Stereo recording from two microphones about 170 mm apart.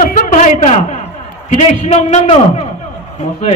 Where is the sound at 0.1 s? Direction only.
50° left (ahead or behind).